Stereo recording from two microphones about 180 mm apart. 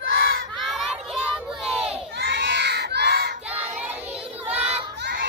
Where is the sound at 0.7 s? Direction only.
Centre (ahead or behind).